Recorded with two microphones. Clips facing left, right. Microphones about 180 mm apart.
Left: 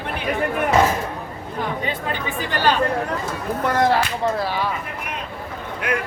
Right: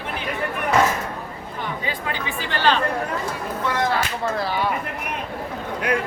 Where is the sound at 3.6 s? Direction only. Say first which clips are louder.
Left 5 dB; 45° left (ahead or behind).